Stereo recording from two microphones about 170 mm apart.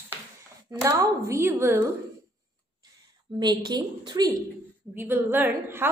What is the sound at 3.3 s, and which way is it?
A woman's voice, 25° right (ahead or behind).